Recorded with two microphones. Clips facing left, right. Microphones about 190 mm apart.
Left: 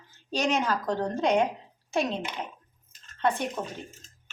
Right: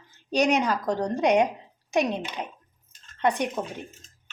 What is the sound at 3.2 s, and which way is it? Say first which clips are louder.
Speech: right 2 dB; 15° right (ahead or behind).